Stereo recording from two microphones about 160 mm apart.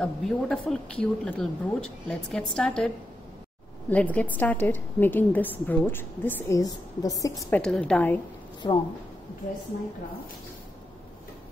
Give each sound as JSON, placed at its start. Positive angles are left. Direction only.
{"t": 0.0, "sound": "speech", "side_deg": 5}
{"t": 3.9, "sound": "a woman's voice", "side_deg": 10}
{"t": 7.5, "sound": "a woman's voice", "side_deg": 5}
{"t": 8.6, "sound": "a woman's voice", "side_deg": 30}